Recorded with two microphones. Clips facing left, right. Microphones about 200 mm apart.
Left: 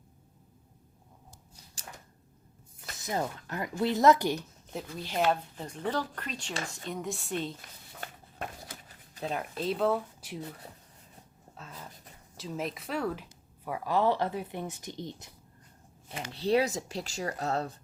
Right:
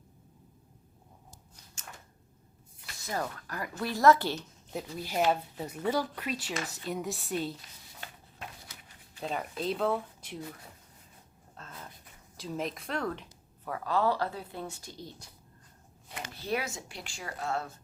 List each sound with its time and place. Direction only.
1.8 s a sound: 35° left (ahead or behind)
3.0 s speech: 20° left (ahead or behind)
4.7 s speech: 5° right (ahead or behind)
8.0 s a sound: 50° left (ahead or behind)
9.2 s speech: 5° left (ahead or behind)
11.6 s speech: 5° left (ahead or behind); by 17.7 s 35° left (ahead or behind)